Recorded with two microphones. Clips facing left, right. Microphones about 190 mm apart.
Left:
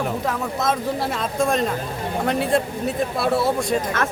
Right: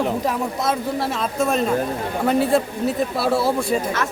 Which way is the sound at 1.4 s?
5° right (ahead or behind).